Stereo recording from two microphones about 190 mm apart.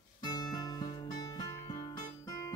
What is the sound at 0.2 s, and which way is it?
Music, 20° left (ahead or behind).